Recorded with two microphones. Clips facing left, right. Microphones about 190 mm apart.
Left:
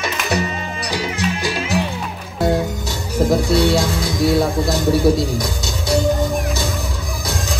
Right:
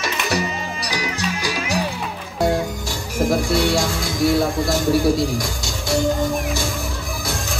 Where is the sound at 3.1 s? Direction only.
20° left (ahead or behind).